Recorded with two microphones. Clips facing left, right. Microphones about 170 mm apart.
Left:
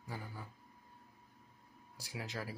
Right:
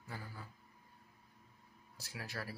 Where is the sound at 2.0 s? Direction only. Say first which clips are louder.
Left 2 dB; 15° left (ahead or behind).